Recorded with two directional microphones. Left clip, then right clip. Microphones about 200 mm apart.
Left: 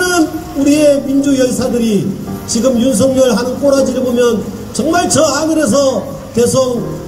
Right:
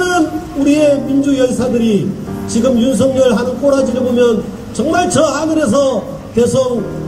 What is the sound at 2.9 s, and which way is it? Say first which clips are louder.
A man's voice: left 1 dB; 25° left (ahead or behind).